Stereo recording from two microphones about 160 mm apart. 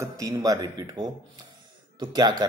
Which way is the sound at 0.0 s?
20° right (ahead or behind).